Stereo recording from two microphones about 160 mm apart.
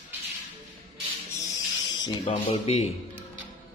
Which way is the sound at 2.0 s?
30° left (ahead or behind).